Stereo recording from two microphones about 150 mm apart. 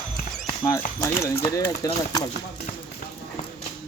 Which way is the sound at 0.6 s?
20° left (ahead or behind).